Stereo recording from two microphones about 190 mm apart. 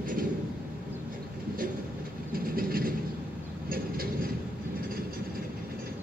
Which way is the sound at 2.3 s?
50° right (ahead or behind).